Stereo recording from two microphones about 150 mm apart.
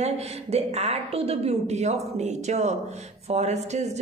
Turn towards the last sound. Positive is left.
turn(degrees=-50)  # may be behind; listen again after turning